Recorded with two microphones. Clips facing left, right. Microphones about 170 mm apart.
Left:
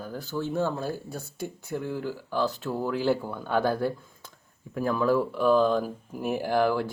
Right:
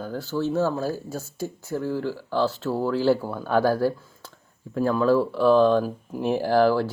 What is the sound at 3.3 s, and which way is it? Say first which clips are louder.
Speech: right 4 dB; 55° right (ahead or behind).